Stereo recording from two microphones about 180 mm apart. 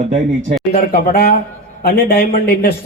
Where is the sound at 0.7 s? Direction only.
55° left (ahead or behind).